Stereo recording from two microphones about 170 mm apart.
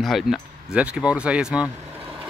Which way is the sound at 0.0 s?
Centre (ahead or behind).